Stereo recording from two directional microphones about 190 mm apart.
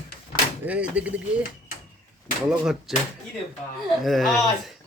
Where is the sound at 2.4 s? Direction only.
5° right (ahead or behind).